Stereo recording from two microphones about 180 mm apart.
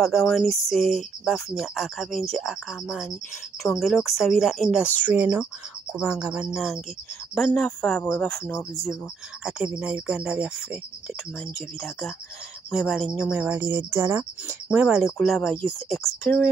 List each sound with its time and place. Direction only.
0.0 s speech: centre (ahead or behind)
9.4 s speech: 5° right (ahead or behind)